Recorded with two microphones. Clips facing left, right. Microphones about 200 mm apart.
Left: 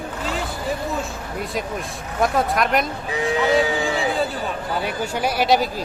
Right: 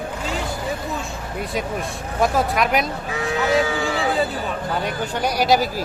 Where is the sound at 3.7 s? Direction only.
20° left (ahead or behind).